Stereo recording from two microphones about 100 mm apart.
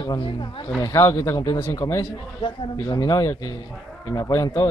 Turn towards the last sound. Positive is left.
turn(degrees=40)  # may be behind; listen again after turning